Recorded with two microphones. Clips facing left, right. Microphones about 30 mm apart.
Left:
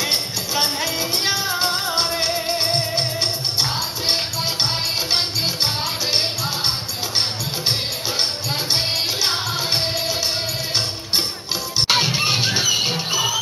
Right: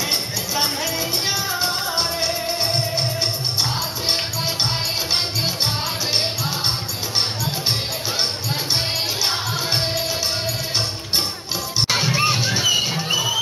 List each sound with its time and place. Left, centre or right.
0.6 s music: left
9.2 s music: centre
11.9 s music: left